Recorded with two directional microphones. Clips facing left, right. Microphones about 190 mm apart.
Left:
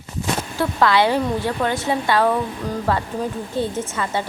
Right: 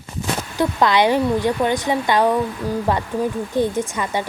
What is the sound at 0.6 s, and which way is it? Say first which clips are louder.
Speech: right 1 dB; 15° right (ahead or behind).